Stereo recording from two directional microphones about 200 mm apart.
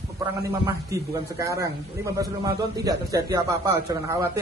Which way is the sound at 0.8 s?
15° right (ahead or behind).